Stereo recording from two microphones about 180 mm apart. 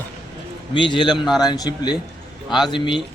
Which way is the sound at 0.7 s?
25° left (ahead or behind).